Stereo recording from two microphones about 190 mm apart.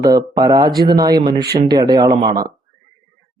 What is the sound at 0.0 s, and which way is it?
Speech, 20° right (ahead or behind).